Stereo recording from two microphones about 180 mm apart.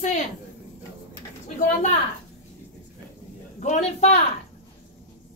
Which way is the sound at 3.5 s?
40° left (ahead or behind).